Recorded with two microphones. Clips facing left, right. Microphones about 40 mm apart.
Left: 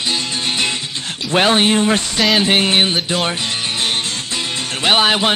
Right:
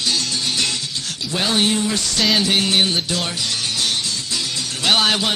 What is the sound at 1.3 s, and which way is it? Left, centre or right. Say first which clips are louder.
Speech: left 8 dB; left.